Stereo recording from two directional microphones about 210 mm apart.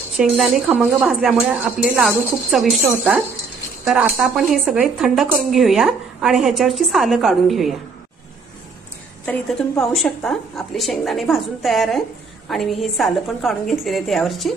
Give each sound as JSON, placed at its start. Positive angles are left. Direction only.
{"t": 0.2, "sound": "speech", "side_deg": 0}
{"t": 9.2, "sound": "speech", "side_deg": 5}